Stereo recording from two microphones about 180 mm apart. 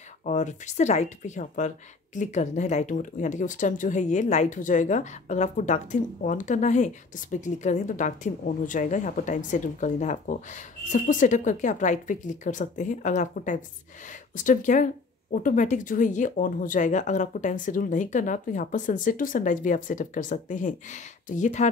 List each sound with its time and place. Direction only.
0.2 s speech: 40° left (ahead or behind)